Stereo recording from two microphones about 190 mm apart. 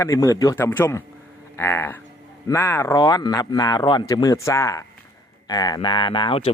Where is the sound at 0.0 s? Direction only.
15° left (ahead or behind).